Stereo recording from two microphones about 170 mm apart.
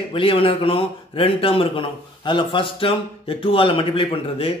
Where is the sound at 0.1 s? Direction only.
30° left (ahead or behind).